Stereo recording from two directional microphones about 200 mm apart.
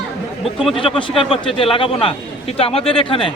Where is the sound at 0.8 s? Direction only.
25° left (ahead or behind).